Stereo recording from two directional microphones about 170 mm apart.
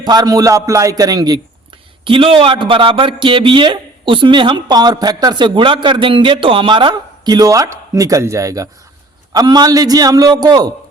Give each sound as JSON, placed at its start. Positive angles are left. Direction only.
{"t": 0.0, "sound": "a man's voice", "side_deg": -25}